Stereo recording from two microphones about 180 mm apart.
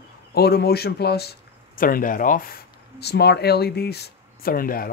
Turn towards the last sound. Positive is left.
turn(degrees=55)  # may be behind; listen again after turning